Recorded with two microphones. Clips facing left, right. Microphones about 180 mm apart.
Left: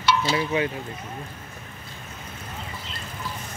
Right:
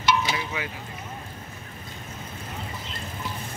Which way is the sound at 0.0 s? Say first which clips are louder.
Left 1 dB; 15° right (ahead or behind).